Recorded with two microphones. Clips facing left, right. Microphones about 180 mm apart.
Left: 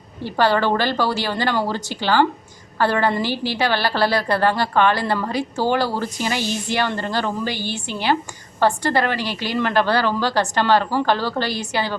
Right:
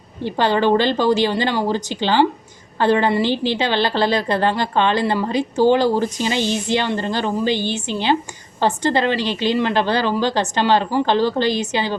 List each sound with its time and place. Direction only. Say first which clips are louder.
0.3 s a woman's voice: right 2 dB; 20° right (ahead or behind)